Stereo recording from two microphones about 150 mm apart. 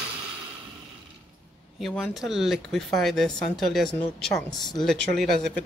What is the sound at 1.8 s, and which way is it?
Speech, centre (ahead or behind).